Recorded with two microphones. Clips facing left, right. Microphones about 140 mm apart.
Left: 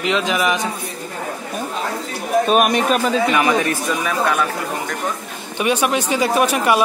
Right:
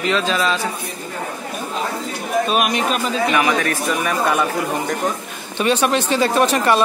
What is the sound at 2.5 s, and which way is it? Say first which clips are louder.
Speech: left 5 dB; 45° left (ahead or behind).